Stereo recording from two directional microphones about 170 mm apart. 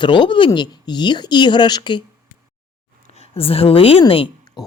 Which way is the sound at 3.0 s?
40° left (ahead or behind).